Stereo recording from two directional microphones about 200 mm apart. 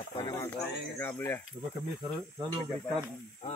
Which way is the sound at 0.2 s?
20° left (ahead or behind).